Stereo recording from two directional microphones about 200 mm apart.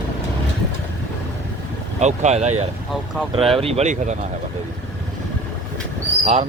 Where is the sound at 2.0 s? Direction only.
35° right (ahead or behind).